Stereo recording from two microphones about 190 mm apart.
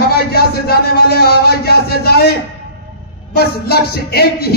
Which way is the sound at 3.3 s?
55° left (ahead or behind).